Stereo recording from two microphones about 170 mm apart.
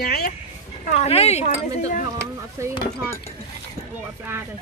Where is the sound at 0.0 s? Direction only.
65° left (ahead or behind).